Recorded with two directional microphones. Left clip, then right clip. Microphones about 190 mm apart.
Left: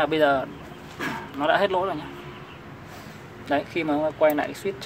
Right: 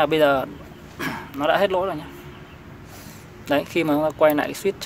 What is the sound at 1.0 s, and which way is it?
Dog, 40° right (ahead or behind).